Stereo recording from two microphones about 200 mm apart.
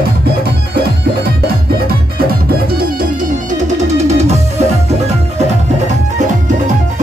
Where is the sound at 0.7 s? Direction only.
50° right (ahead or behind).